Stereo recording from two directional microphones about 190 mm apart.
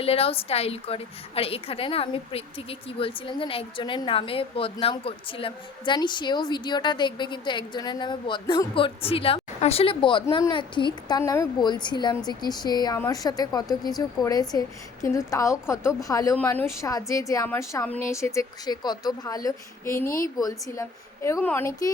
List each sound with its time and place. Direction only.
0.0 s a woman's voice: 30° left (ahead or behind)
11.2 s a woman's voice: 15° left (ahead or behind)
15.8 s speech: 5° right (ahead or behind)
16.0 s a woman's voice: 15° left (ahead or behind)